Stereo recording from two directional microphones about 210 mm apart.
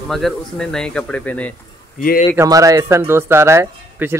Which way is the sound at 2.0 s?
40° left (ahead or behind).